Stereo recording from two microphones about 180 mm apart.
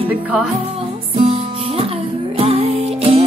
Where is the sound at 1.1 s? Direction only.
30° right (ahead or behind).